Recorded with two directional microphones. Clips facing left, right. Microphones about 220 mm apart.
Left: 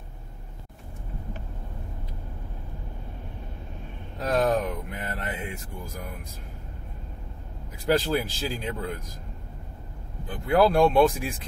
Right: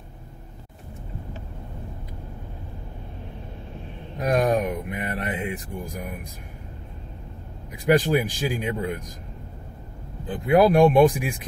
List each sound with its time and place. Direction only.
4.2 s speech: 15° right (ahead or behind)
7.7 s speech: 15° right (ahead or behind)
10.2 s speech: 15° right (ahead or behind)